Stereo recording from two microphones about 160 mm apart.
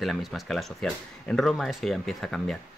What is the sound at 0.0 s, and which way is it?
Speech, centre (ahead or behind).